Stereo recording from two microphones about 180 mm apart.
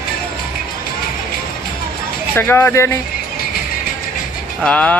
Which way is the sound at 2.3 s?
10° left (ahead or behind).